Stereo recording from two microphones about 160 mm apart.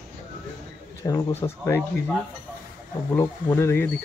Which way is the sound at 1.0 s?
20° left (ahead or behind).